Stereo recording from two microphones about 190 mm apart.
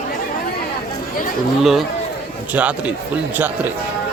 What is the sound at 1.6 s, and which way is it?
Speech, centre (ahead or behind).